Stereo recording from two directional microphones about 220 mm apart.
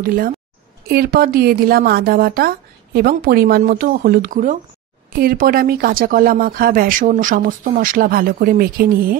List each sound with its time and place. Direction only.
0.0 s a woman's voice: 40° right (ahead or behind)